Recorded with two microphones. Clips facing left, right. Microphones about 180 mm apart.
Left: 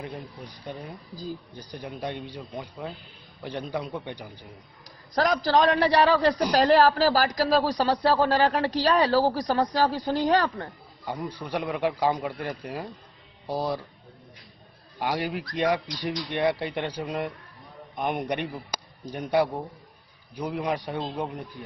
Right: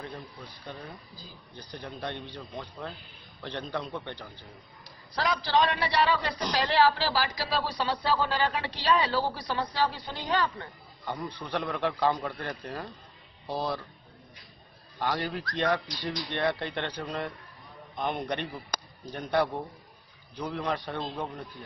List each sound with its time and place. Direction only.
0.0 s speech: 15° left (ahead or behind)
5.1 s a man's voice: 45° left (ahead or behind)
11.1 s speech: 10° left (ahead or behind)
15.0 s speech: 10° left (ahead or behind)